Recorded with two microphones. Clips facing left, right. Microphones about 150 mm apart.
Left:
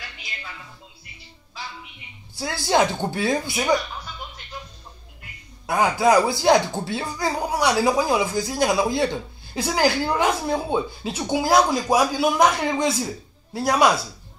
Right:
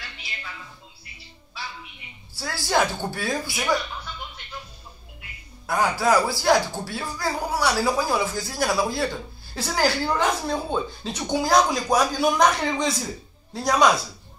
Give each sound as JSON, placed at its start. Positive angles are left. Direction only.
{"t": 2.3, "sound": "speech", "side_deg": 20}
{"t": 5.7, "sound": "speech", "side_deg": 20}